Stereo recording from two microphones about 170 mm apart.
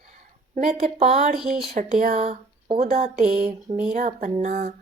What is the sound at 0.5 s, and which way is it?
Speech, 45° right (ahead or behind).